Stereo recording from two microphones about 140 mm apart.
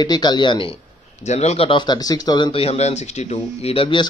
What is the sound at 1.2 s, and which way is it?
Speech, 50° left (ahead or behind).